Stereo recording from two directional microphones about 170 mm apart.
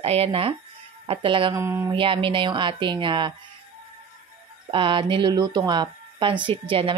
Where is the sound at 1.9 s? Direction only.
30° right (ahead or behind).